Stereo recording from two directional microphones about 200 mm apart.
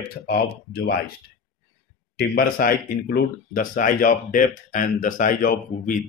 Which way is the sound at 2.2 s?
45° left (ahead or behind).